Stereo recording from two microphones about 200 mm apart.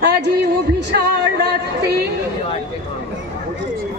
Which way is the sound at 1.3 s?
55° right (ahead or behind).